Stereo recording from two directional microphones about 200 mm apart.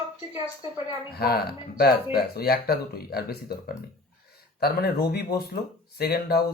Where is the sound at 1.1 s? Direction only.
50° left (ahead or behind).